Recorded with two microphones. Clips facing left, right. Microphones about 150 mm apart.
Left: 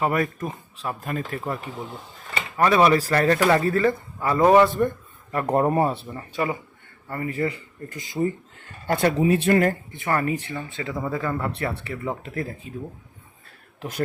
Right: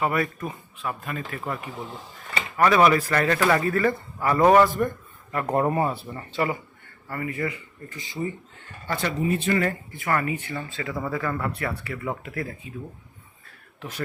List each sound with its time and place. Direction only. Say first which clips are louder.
0.0 s speech: left 2 dB; 40° left (ahead or behind)
2.6 s speech: left 1 dB; 25° left (ahead or behind)
6.1 s speech: even; 15° left (ahead or behind)
7.1 s speech: left 3 dB; 30° left (ahead or behind)
7.9 s speech: left 6 dB; 45° left (ahead or behind)
9.9 s speech: left 2 dB; 25° left (ahead or behind)
10.5 s speech: left 1 dB; 20° left (ahead or behind)